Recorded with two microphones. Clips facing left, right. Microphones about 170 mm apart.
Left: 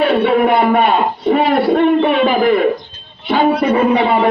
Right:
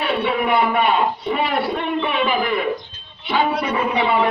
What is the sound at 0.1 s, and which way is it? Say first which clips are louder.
Speech: left 7 dB; 45° left (ahead or behind).